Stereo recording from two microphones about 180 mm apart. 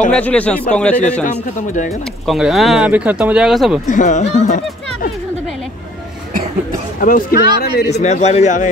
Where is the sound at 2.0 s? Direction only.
Centre (ahead or behind).